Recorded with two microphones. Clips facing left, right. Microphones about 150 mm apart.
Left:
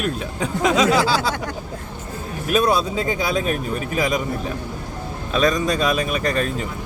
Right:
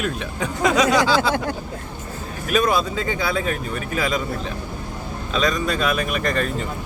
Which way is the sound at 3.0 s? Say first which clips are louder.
Left 2 dB; 15° left (ahead or behind).